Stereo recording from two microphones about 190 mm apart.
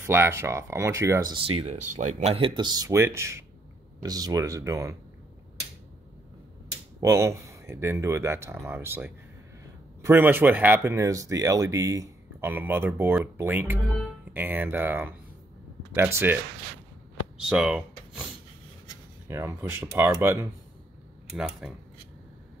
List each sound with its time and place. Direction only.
0.0 s speech: 10° right (ahead or behind)
7.0 s speech: 15° right (ahead or behind)
17.4 s speech: 5° right (ahead or behind)
19.2 s speech: 15° right (ahead or behind)
21.4 s speech: 5° right (ahead or behind)